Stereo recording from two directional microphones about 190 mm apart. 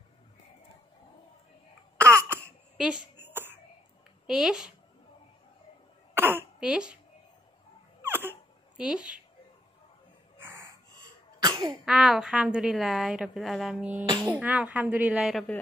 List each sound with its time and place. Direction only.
2.0 s cough: 15° right (ahead or behind)
2.8 s a sound: 10° right (ahead or behind)
4.3 s a woman's voice: 5° right (ahead or behind)
6.1 s throat clearing: 10° right (ahead or behind)
8.0 s dog: 10° right (ahead or behind)
11.3 s cough: 20° right (ahead or behind)
11.8 s a woman's voice: 5° right (ahead or behind)